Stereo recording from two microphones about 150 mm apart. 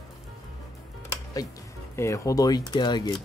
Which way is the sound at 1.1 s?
25° left (ahead or behind).